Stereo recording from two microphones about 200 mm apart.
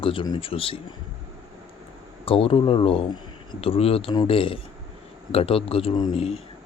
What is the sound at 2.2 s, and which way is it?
A man's voice, 30° left (ahead or behind).